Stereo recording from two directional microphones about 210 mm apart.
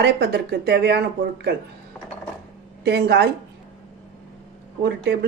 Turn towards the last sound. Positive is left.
turn(degrees=-55)  # may be behind; listen again after turning